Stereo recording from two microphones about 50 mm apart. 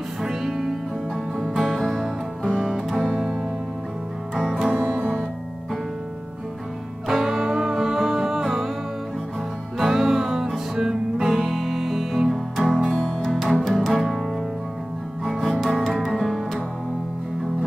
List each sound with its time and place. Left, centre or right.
0.2 s music: centre
4.4 s music: centre
4.7 s music: right
7.1 s music: centre
9.8 s music: centre
15.2 s music: centre